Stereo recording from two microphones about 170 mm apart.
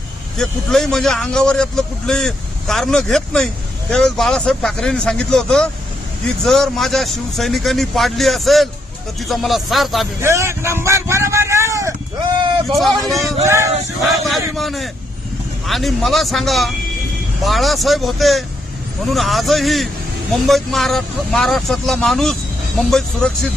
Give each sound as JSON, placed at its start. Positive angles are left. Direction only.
{"t": 0.3, "sound": "a man's voice", "side_deg": 0}
{"t": 10.2, "sound": "speech", "side_deg": -15}
{"t": 12.6, "sound": "a man's voice", "side_deg": 0}
{"t": 13.4, "sound": "speech", "side_deg": -15}
{"t": 14.0, "sound": "a man's voice", "side_deg": 0}